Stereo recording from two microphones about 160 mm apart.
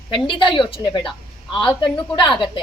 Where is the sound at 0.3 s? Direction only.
30° left (ahead or behind).